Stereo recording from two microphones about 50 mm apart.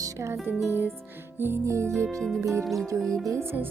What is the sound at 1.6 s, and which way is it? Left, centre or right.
Speech, right.